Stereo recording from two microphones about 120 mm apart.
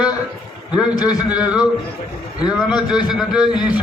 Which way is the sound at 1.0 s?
35° left (ahead or behind).